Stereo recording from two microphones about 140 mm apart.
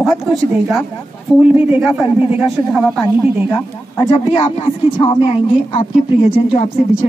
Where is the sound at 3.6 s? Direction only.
25° left (ahead or behind).